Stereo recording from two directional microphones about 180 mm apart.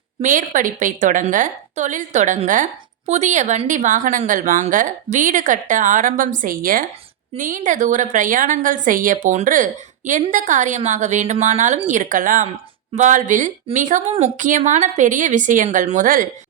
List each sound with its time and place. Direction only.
0.2 s a woman's voice: 45° right (ahead or behind)